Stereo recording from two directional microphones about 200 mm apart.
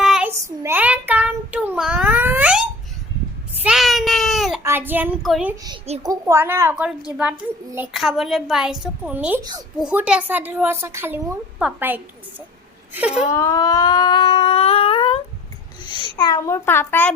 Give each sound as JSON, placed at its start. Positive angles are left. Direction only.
{"t": 0.0, "sound": "child singing", "side_deg": 0}
{"t": 0.3, "sound": "child singing", "side_deg": -15}
{"t": 4.6, "sound": "a child's voice", "side_deg": -10}
{"t": 5.6, "sound": "a child's voice", "side_deg": -25}
{"t": 6.0, "sound": "a woman's voice", "side_deg": -15}
{"t": 9.4, "sound": "a child's voice", "side_deg": -20}
{"t": 9.7, "sound": "a woman's voice", "side_deg": -5}
{"t": 13.3, "sound": "a sound", "side_deg": 15}
{"t": 15.8, "sound": "a child's voice", "side_deg": 25}